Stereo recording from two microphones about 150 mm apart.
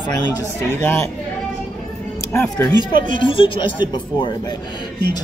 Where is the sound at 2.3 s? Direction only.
15° left (ahead or behind).